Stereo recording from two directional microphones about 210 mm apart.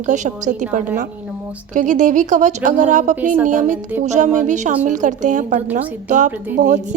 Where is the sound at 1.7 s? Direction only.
35° right (ahead or behind).